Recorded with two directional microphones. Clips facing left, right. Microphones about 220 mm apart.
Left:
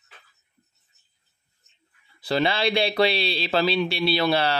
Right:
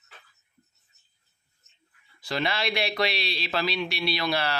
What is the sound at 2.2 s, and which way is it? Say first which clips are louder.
Speech: left 6 dB; 30° left (ahead or behind).